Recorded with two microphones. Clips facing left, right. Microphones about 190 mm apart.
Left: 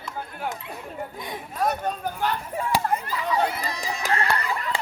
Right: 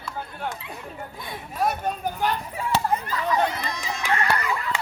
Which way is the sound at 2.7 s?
10° left (ahead or behind).